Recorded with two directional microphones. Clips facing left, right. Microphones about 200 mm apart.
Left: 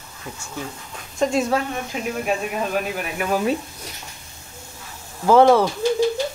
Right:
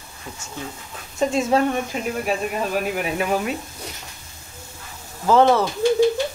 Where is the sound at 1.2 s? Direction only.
Centre (ahead or behind).